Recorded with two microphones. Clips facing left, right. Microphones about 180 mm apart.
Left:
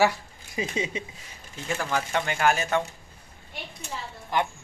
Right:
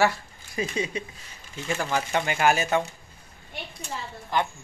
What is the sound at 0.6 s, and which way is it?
Speech, 20° left (ahead or behind).